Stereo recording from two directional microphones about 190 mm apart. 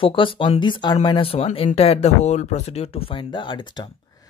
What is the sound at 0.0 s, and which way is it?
Speech, 25° left (ahead or behind).